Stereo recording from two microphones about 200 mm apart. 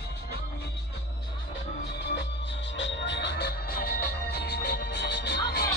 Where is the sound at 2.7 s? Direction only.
65° left (ahead or behind).